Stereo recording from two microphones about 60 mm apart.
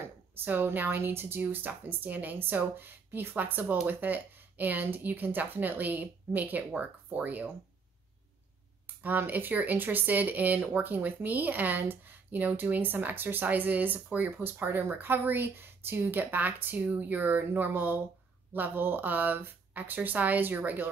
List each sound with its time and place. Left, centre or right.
0.5 s speech: right
8.8 s speech: right